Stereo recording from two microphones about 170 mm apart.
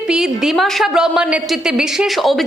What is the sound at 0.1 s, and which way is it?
A woman's voice, 5° right (ahead or behind).